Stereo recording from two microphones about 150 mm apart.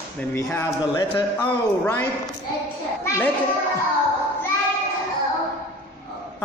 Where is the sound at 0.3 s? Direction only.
15° left (ahead or behind).